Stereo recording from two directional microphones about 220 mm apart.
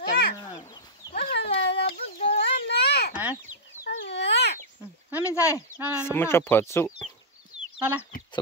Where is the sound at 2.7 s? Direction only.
45° left (ahead or behind).